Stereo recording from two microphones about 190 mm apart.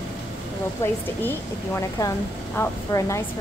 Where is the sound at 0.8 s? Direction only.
15° left (ahead or behind).